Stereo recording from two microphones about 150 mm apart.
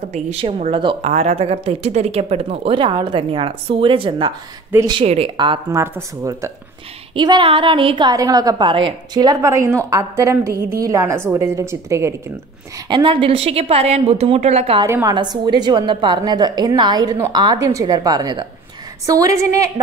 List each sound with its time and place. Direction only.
0.1 s a woman's voice: 45° right (ahead or behind); by 5.0 s 30° right (ahead or behind)
5.0 s speech: 45° right (ahead or behind)
5.4 s speech: 30° right (ahead or behind)
5.8 s a woman's voice: 20° right (ahead or behind)
7.2 s a woman's voice: 30° right (ahead or behind)
12.7 s speech: 30° right (ahead or behind)
14.8 s a woman's voice: 20° right (ahead or behind)